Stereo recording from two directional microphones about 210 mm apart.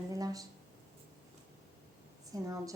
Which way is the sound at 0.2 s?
15° right (ahead or behind).